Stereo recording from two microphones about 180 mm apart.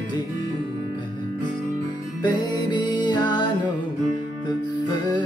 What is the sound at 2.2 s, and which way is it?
Music, 25° left (ahead or behind).